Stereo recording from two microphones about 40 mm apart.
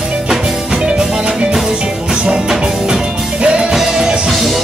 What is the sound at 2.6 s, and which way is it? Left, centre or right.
Music, right.